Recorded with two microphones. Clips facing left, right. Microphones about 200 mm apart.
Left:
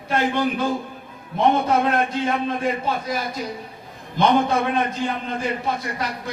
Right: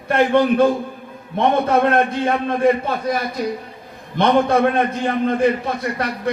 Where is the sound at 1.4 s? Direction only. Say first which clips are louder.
Right 2 dB; 60° right (ahead or behind).